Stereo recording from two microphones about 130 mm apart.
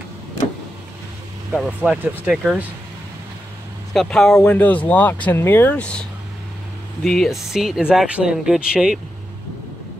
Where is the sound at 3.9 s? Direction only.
5° left (ahead or behind).